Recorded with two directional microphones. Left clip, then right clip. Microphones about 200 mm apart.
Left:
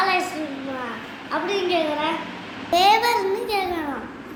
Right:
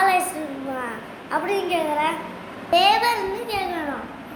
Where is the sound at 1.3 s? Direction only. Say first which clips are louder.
Even; 15° right (ahead or behind).